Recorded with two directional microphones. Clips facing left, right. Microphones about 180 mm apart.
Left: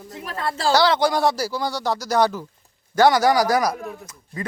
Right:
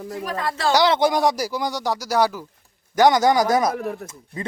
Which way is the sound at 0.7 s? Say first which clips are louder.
Right 1 dB; 20° right (ahead or behind).